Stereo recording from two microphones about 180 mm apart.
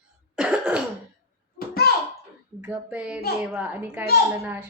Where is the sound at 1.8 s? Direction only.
60° left (ahead or behind).